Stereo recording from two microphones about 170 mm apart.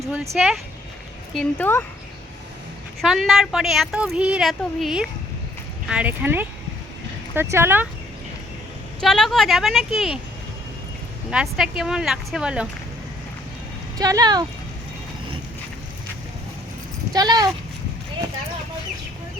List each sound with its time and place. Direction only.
0.0 s speech: centre (ahead or behind)
3.0 s speech: centre (ahead or behind)
9.0 s speech: centre (ahead or behind)
11.3 s speech: 5° right (ahead or behind)
14.0 s speech: 20° right (ahead or behind)
17.1 s speech: 25° right (ahead or behind)